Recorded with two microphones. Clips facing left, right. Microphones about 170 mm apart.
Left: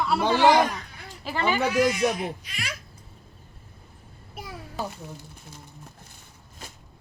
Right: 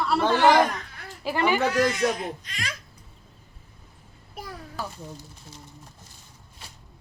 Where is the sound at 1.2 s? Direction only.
10° right (ahead or behind).